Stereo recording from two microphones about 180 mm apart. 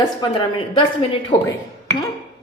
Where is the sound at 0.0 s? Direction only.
25° left (ahead or behind).